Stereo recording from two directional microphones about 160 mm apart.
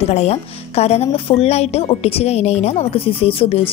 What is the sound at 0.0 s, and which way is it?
A woman's voice, 40° left (ahead or behind).